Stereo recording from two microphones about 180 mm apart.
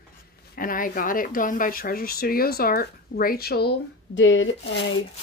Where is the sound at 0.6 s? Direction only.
50° left (ahead or behind).